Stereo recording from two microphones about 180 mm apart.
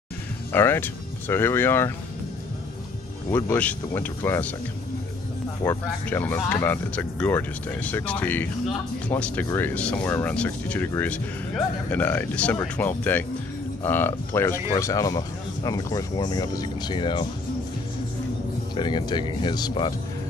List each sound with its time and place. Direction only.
0.5 s speech: 10° left (ahead or behind)
3.3 s speech: 15° left (ahead or behind)
5.6 s speech: 15° left (ahead or behind)
18.8 s speech: 25° left (ahead or behind)